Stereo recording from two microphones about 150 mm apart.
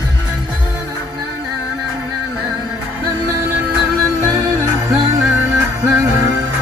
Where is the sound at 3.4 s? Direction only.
15° right (ahead or behind).